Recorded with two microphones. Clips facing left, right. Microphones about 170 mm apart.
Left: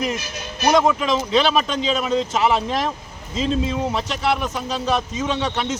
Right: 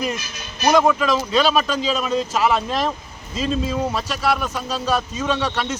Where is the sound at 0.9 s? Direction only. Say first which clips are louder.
Right 1 dB; 20° left (ahead or behind).